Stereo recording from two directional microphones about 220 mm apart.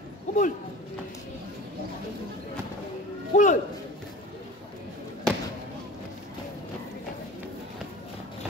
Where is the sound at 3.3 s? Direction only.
35° left (ahead or behind).